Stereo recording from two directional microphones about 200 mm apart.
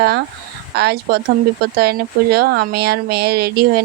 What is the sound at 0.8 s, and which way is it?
A woman's voice, 55° right (ahead or behind).